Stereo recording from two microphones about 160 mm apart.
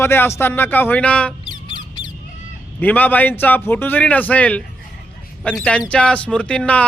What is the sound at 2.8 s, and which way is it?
Speech, 10° left (ahead or behind).